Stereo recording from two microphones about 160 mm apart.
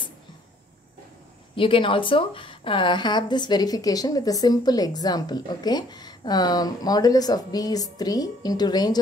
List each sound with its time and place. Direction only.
1.5 s speech: 35° left (ahead or behind)